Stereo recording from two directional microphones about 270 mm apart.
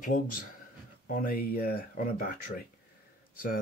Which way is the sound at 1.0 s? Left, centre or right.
Left.